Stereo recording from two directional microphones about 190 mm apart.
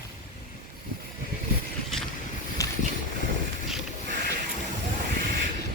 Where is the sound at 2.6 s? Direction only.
15° left (ahead or behind).